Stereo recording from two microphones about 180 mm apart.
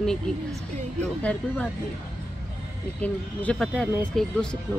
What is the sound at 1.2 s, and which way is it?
Speech, 5° left (ahead or behind).